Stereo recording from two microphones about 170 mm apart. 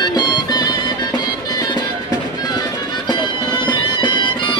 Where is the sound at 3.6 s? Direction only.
25° left (ahead or behind).